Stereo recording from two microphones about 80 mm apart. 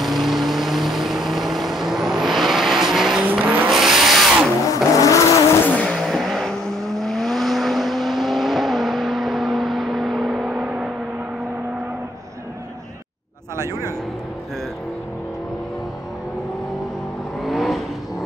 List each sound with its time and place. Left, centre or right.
0.0 s vehicle: centre
4.7 s vehicle: left
5.8 s vehicle: centre
6.0 s vehicle: centre
17.4 s vehicle: centre